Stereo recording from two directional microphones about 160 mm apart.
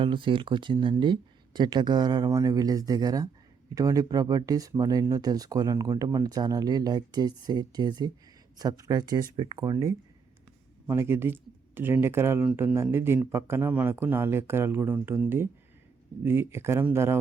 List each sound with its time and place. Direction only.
0.0 s speech: 30° right (ahead or behind); by 17.2 s 15° right (ahead or behind)